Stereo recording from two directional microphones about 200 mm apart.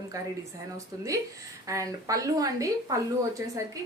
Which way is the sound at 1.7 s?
15° right (ahead or behind).